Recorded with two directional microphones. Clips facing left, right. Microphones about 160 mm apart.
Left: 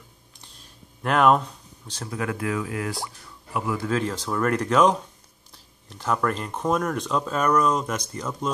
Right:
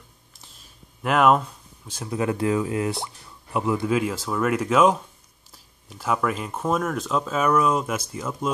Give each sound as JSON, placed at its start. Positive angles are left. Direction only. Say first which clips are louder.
{"t": 0.3, "sound": "a sound", "louder": "left 1 dB", "side_deg": -5}
{"t": 2.0, "sound": "speech", "louder": "right 5 dB", "side_deg": -20}
{"t": 3.9, "sound": "speech", "louder": "right 2 dB", "side_deg": -5}